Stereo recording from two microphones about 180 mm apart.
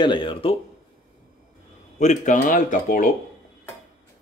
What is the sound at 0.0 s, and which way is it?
Speech, 25° left (ahead or behind).